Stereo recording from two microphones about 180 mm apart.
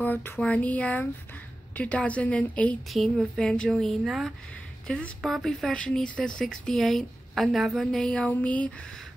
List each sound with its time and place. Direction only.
0.0 s speech: 10° left (ahead or behind)